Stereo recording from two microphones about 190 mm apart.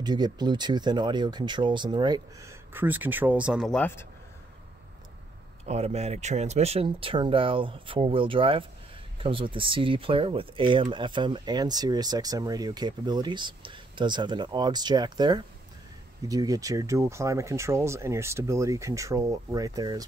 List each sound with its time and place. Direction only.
0.0 s speech: 20° right (ahead or behind); by 4.0 s 5° left (ahead or behind)
5.7 s speech: 35° right (ahead or behind)